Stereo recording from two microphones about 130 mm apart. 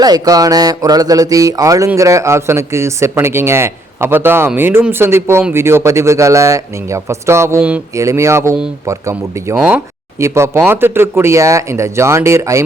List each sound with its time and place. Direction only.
0.0 s speech: 30° right (ahead or behind)